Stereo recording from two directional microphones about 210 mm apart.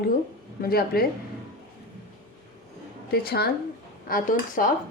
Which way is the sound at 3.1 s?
45° left (ahead or behind).